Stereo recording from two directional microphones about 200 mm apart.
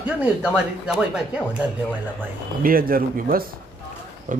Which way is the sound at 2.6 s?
45° right (ahead or behind).